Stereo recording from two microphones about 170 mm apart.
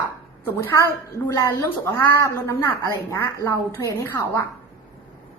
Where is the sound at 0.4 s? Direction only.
15° left (ahead or behind).